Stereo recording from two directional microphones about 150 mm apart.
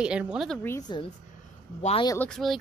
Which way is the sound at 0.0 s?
5° right (ahead or behind).